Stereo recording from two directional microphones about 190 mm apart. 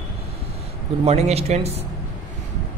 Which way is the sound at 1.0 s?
35° right (ahead or behind).